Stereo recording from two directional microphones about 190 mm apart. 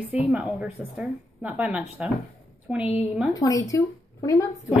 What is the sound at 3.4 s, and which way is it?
Speech, 15° left (ahead or behind).